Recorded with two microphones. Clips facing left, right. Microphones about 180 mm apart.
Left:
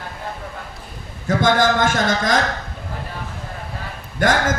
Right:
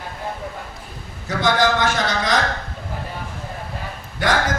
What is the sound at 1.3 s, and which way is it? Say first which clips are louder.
A man's voice: left 2 dB; 50° left (ahead or behind).